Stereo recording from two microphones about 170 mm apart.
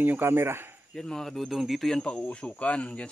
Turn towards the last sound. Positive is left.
turn(degrees=5)  # may be behind; listen again after turning